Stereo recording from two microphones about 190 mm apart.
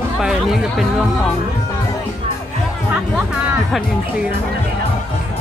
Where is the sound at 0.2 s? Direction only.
Centre (ahead or behind).